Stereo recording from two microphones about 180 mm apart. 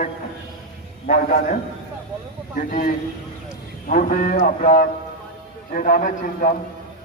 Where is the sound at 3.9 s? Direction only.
45° left (ahead or behind).